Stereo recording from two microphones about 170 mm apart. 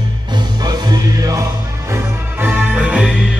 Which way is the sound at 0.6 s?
20° right (ahead or behind).